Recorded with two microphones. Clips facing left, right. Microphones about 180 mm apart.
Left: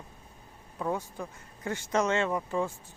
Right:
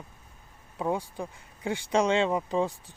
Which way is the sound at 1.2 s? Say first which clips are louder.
Right 3 dB; 15° right (ahead or behind).